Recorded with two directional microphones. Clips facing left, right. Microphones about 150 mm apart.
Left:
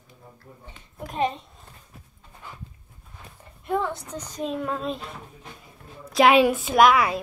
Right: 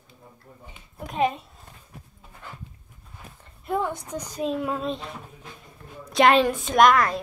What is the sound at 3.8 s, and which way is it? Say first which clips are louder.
A woman's voice: right 2 dB; 15° right (ahead or behind).